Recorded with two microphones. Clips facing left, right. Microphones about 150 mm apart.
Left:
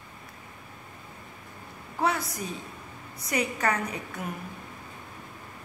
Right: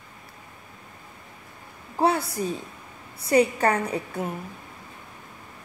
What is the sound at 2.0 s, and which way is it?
A woman's voice, 30° right (ahead or behind).